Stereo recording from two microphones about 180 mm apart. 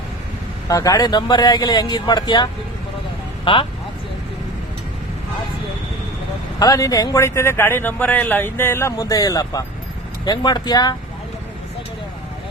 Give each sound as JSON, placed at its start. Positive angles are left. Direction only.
{"t": 0.7, "sound": "speech", "side_deg": 20}
{"t": 6.6, "sound": "speech", "side_deg": 20}